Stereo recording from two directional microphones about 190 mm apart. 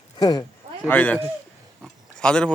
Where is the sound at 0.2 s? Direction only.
20° left (ahead or behind).